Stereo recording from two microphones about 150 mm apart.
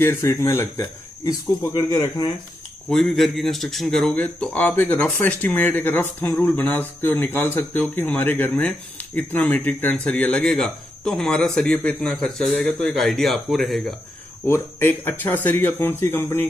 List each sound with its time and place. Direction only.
0.0 s speech: 20° left (ahead or behind)
2.9 s speech: 5° left (ahead or behind)
14.4 s speech: 15° left (ahead or behind)